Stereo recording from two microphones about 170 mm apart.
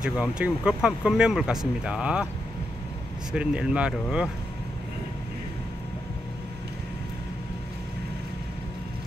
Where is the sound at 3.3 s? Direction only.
5° right (ahead or behind).